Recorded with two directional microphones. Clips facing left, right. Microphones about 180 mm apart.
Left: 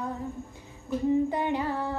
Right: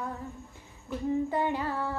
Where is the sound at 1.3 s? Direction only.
20° left (ahead or behind).